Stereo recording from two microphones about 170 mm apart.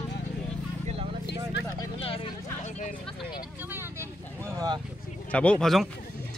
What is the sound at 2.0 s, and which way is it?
Vehicle, 30° left (ahead or behind).